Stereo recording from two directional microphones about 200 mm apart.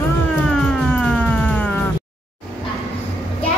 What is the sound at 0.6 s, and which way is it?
Music, 5° left (ahead or behind).